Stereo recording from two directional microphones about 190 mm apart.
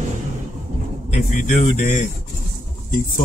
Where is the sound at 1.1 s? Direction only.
45° left (ahead or behind).